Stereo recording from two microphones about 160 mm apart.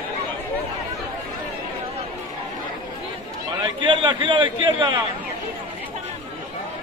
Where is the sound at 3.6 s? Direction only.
30° right (ahead or behind).